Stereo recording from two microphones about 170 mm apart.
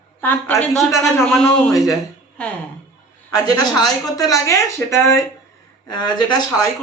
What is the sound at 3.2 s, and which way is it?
A man's voice, 20° left (ahead or behind).